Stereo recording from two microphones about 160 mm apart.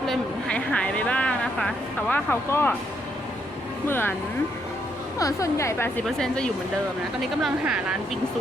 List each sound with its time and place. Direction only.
0.1 s a sound: 5° left (ahead or behind)
3.8 s a woman's voice: 15° left (ahead or behind)
5.2 s a woman's voice: 20° left (ahead or behind)
6.1 s a woman's voice: 5° left (ahead or behind)